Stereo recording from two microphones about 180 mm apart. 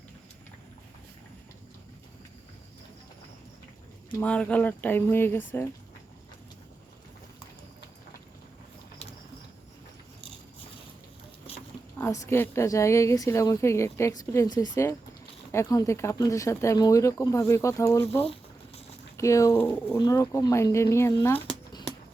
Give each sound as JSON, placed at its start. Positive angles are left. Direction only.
{"t": 4.2, "sound": "a woman's voice", "side_deg": 5}
{"t": 11.9, "sound": "a woman's voice", "side_deg": 15}
{"t": 21.3, "sound": "a sound", "side_deg": 25}